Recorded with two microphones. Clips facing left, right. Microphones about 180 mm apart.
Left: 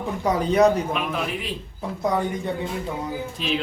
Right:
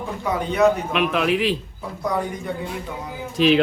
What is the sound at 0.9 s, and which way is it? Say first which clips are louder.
Speech: right 7 dB; 85° right.